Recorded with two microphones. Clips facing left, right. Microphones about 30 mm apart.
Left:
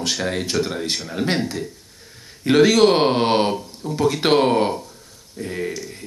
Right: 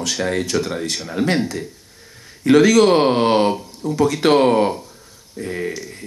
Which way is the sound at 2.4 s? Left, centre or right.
Left.